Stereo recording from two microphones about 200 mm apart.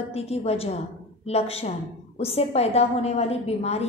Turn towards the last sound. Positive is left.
turn(degrees=30)  # may be behind; listen again after turning